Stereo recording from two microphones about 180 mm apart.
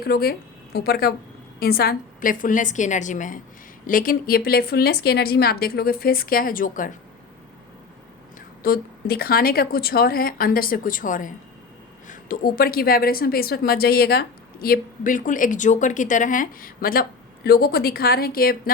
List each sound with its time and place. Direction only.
0.0 s a woman's voice: 60° left (ahead or behind)
8.4 s a woman's voice: 55° left (ahead or behind)